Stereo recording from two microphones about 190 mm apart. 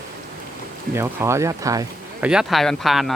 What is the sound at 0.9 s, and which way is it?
Speech, 15° right (ahead or behind).